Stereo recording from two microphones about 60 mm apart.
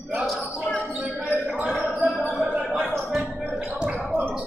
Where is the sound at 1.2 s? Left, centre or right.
Right.